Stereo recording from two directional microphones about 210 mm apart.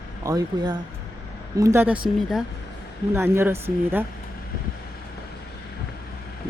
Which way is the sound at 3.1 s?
10° right (ahead or behind).